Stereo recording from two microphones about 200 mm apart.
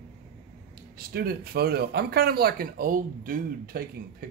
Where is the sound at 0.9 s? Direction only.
50° right (ahead or behind).